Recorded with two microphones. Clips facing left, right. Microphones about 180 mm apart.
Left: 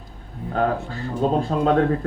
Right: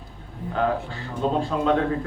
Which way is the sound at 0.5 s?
40° left (ahead or behind).